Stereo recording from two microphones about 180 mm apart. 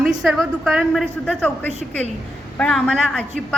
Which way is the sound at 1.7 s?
40° right (ahead or behind).